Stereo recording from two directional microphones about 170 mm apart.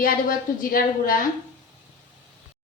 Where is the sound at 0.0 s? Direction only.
55° left (ahead or behind).